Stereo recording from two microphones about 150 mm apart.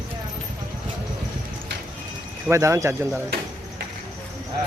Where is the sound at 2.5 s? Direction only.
20° right (ahead or behind).